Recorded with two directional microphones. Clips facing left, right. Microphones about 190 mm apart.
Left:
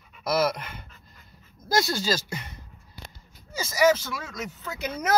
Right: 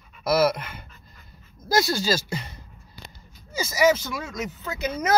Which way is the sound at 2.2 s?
30° right (ahead or behind).